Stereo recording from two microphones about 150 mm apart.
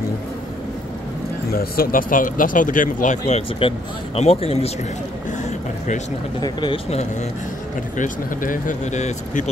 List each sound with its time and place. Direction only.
1.5 s speech: 80° left; by 4.7 s 40° left (ahead or behind)
6.4 s speech: 30° left (ahead or behind)
8.0 s speech: 65° left (ahead or behind)